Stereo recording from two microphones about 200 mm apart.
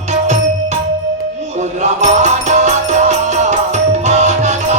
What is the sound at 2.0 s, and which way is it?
Music, 35° right (ahead or behind).